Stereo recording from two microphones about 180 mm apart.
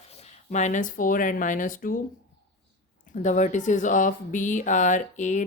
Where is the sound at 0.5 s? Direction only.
40° left (ahead or behind).